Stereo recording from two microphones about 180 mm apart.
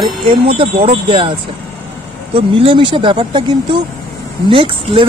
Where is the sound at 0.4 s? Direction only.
30° right (ahead or behind).